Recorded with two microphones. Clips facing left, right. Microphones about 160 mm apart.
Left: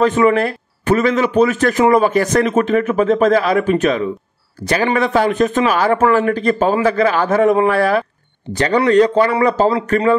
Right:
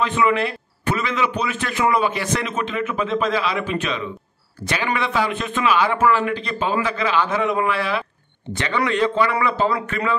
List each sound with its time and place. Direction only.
0.0 s a man's voice: 45° left (ahead or behind)